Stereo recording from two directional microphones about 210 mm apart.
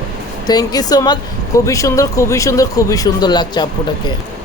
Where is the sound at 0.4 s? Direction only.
20° left (ahead or behind).